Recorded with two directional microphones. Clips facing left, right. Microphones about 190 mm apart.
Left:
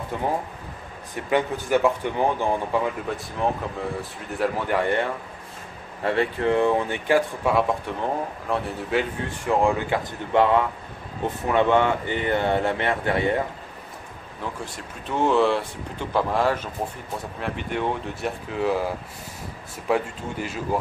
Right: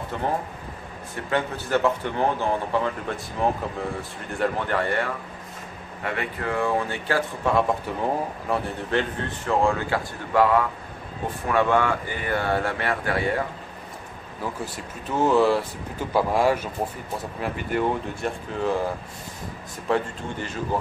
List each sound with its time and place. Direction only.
0.1 s a man's voice: 10° left (ahead or behind)
3.4 s a man's voice: centre (ahead or behind); by 5.1 s 20° left (ahead or behind)
6.0 s speech: 30° left (ahead or behind)
8.0 s speech: centre (ahead or behind)
9.4 s speech: 15° left (ahead or behind)
14.4 s a man's voice: 5° right (ahead or behind)